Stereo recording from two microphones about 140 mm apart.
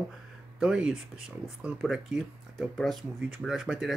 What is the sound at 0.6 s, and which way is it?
Speech, 5° right (ahead or behind).